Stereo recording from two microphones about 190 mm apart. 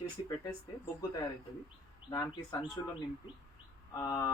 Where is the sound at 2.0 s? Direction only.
20° left (ahead or behind).